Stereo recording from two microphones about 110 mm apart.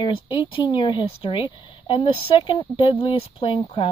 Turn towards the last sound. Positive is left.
turn(degrees=55)  # may be behind; listen again after turning